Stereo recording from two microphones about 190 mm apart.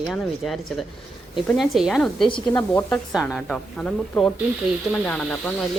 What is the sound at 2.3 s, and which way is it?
Speech, 25° left (ahead or behind).